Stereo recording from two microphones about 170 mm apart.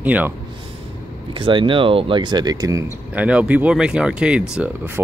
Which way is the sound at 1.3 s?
30° right (ahead or behind).